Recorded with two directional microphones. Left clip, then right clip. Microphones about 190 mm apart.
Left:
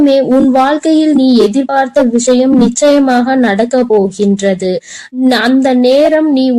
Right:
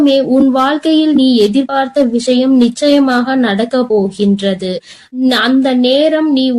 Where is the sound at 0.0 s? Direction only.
30° left (ahead or behind).